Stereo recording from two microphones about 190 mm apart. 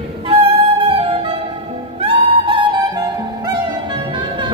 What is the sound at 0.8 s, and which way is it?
Music, 30° right (ahead or behind).